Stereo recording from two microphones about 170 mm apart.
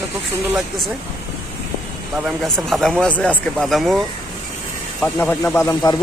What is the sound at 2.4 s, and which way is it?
Speech, centre (ahead or behind).